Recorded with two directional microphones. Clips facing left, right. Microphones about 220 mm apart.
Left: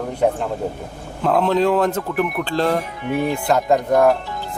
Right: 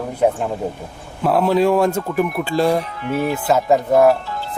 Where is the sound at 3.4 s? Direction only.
5° right (ahead or behind).